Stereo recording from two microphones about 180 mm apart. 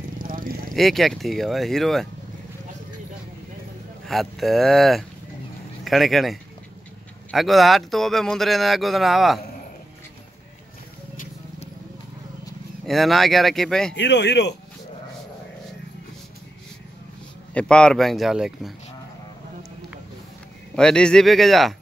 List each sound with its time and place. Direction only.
0.2 s vehicle: 50° right (ahead or behind)
0.7 s speech: centre (ahead or behind)
4.0 s speech: centre (ahead or behind)
12.8 s speech: centre (ahead or behind)
13.9 s speech: 75° left (ahead or behind)
17.6 s speech: 5° left (ahead or behind)
20.7 s speech: 5° left (ahead or behind)